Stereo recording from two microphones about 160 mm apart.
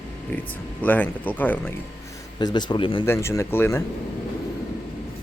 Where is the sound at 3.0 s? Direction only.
15° left (ahead or behind).